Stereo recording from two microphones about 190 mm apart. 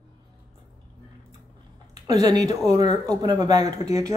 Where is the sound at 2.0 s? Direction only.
20° right (ahead or behind).